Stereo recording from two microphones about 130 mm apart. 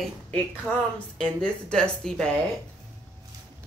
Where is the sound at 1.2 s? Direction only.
5° left (ahead or behind).